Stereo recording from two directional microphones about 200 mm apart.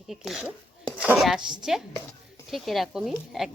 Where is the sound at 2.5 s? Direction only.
Centre (ahead or behind).